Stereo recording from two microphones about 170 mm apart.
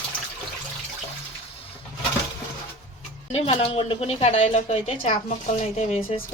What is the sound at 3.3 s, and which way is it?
A woman's voice, 35° left (ahead or behind).